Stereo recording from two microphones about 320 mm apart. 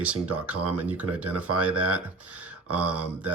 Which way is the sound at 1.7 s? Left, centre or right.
Right.